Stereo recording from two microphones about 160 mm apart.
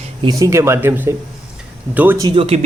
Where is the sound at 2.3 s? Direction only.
35° right (ahead or behind).